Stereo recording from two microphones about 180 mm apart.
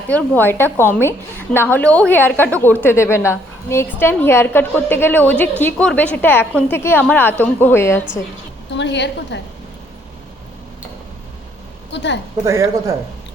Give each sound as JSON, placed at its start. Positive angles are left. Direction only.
{"t": 0.1, "sound": "a woman's voice", "side_deg": 10}
{"t": 8.7, "sound": "a woman's voice", "side_deg": 80}
{"t": 11.9, "sound": "a woman's voice", "side_deg": 75}
{"t": 12.5, "sound": "speech", "side_deg": -15}